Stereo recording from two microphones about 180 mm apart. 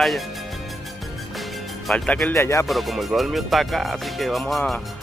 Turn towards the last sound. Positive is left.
turn(degrees=0)  # may be behind; listen again after turning